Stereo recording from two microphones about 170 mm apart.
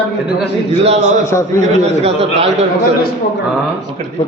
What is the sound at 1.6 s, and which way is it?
Speech, 40° right (ahead or behind).